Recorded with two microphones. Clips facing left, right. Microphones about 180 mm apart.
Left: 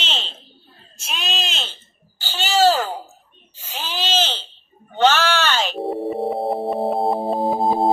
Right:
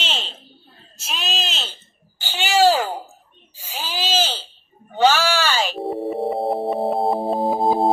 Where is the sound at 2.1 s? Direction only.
15° right (ahead or behind).